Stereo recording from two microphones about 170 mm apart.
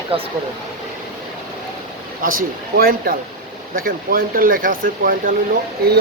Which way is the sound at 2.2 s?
60° right (ahead or behind).